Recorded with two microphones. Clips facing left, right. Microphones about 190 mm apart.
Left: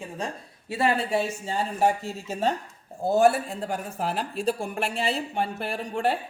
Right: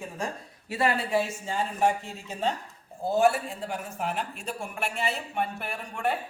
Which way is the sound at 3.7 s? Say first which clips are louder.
Left 2 dB; 35° left (ahead or behind).